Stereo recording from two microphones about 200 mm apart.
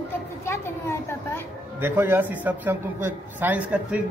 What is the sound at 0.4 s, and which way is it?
Children playing, 15° left (ahead or behind).